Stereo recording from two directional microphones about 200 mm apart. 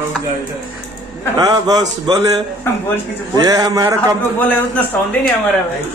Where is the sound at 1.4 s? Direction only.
20° right (ahead or behind).